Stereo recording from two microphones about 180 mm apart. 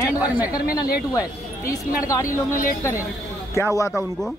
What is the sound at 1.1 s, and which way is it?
Speech, 20° left (ahead or behind).